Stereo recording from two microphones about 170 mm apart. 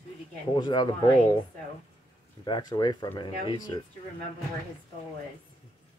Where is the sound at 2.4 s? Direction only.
25° left (ahead or behind).